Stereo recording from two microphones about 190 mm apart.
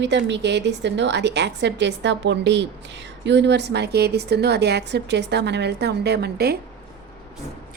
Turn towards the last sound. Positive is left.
turn(degrees=-55)  # may be behind; listen again after turning